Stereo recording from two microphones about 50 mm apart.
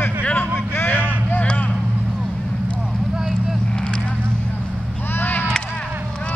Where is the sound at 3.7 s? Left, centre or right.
Centre.